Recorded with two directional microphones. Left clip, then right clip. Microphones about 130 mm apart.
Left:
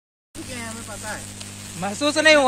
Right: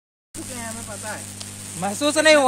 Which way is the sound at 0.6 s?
35° left (ahead or behind).